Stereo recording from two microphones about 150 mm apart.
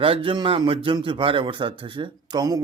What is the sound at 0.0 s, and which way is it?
Speech, 35° right (ahead or behind).